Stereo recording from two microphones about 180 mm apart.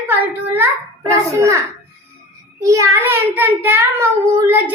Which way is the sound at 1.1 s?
15° right (ahead or behind).